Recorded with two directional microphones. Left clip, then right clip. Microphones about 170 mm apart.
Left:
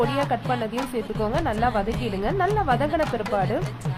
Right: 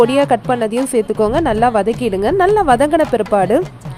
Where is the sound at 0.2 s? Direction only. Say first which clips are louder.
Right 11 dB; 40° right (ahead or behind).